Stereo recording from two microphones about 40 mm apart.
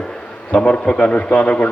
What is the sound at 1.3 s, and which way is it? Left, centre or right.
Speech, left.